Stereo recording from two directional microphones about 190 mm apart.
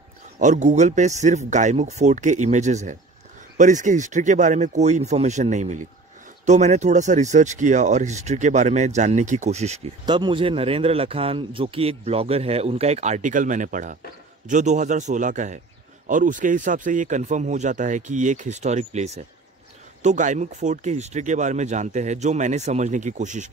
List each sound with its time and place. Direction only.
0.4 s a man's voice: 40° right (ahead or behind)
10.0 s a man's voice: 25° right (ahead or behind); by 23.5 s 40° right (ahead or behind)